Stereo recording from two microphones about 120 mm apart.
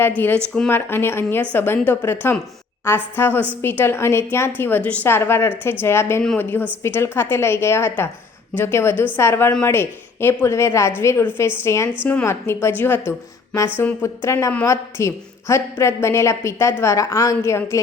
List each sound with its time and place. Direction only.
0.7 s a woman's voice: 20° left (ahead or behind)